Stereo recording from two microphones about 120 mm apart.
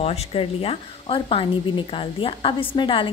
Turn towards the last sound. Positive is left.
turn(degrees=45)  # may be behind; listen again after turning